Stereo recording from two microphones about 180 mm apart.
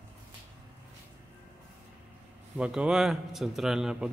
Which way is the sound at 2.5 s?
5° right (ahead or behind).